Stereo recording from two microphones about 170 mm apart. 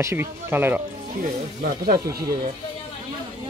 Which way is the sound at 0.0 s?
15° right (ahead or behind).